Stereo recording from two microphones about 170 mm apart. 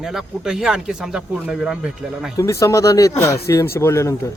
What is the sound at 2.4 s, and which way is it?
Speech, 15° left (ahead or behind).